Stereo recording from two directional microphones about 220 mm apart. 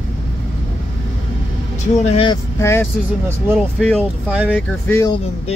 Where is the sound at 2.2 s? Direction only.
15° left (ahead or behind).